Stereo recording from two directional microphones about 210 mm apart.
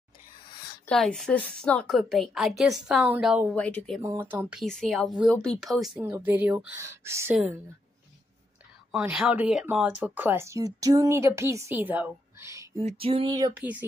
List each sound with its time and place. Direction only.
0.8 s a woman's voice: centre (ahead or behind)
4.0 s a woman's voice: 10° right (ahead or behind)
5.9 s speech: 10° right (ahead or behind)
8.9 s speech: 5° right (ahead or behind)
12.8 s a sound: 25° right (ahead or behind)
13.6 s speech: 10° right (ahead or behind)